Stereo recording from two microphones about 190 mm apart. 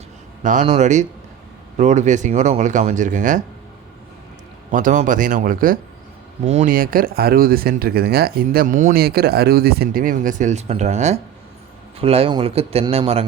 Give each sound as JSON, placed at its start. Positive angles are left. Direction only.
{"t": 0.4, "sound": "speech", "side_deg": -40}
{"t": 4.7, "sound": "speech", "side_deg": -45}
{"t": 6.4, "sound": "speech", "side_deg": -35}